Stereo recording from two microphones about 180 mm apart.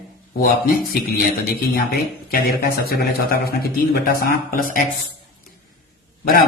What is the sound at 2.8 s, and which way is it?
A man's voice, 60° left (ahead or behind).